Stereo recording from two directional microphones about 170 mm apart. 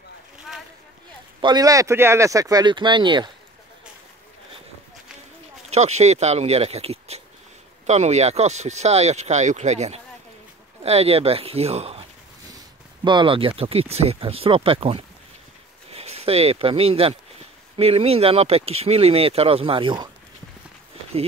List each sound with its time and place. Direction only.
1.4 s speech: 25° right (ahead or behind)
5.7 s speech: 40° right (ahead or behind)
12.4 s speech: 25° right (ahead or behind)